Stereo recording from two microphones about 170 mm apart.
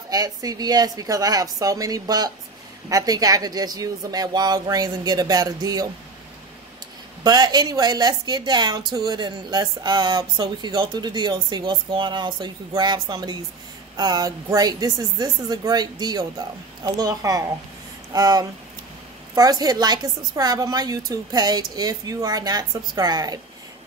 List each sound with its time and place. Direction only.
0.1 s speech: 20° right (ahead or behind)
7.2 s speech: 25° right (ahead or behind)